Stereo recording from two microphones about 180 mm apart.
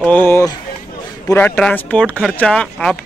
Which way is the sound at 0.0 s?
10° left (ahead or behind).